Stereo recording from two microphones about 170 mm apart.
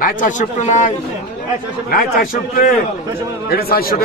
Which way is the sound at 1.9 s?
55° left (ahead or behind).